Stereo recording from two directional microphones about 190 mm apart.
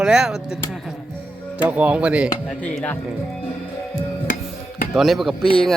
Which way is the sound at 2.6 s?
5° left (ahead or behind).